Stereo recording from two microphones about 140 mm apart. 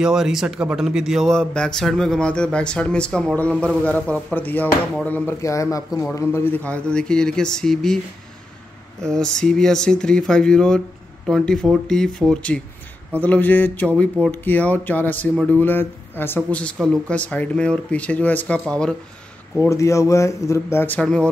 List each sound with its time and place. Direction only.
0.0 s a man's voice: 5° right (ahead or behind)
9.0 s speech: 5° left (ahead or behind)
19.6 s a man's voice: 20° left (ahead or behind)